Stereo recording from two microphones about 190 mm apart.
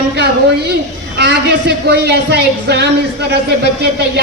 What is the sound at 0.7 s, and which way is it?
A woman's voice, 60° right (ahead or behind).